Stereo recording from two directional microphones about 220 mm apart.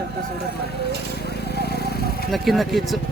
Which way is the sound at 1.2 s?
45° left (ahead or behind).